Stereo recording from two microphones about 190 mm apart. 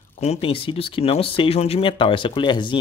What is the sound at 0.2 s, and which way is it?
Speech, 30° left (ahead or behind).